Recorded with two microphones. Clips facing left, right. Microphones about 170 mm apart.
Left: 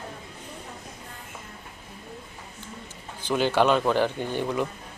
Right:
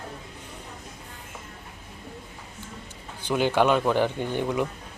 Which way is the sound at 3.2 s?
15° right (ahead or behind).